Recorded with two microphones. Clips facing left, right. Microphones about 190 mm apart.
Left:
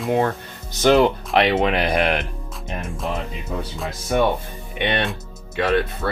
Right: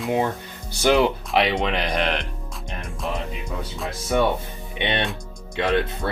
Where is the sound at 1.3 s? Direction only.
Centre (ahead or behind).